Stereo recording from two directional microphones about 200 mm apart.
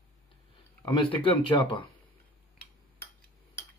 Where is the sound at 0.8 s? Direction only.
20° left (ahead or behind).